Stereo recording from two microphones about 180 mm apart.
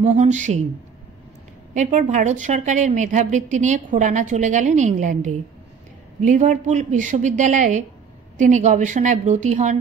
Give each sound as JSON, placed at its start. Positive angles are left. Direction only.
{"t": 0.0, "sound": "speech", "side_deg": -40}
{"t": 1.7, "sound": "a woman's voice", "side_deg": -45}